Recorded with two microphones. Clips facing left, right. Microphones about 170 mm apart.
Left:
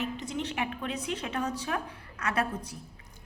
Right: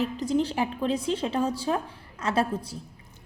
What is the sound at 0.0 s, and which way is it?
A woman's voice, 35° right (ahead or behind).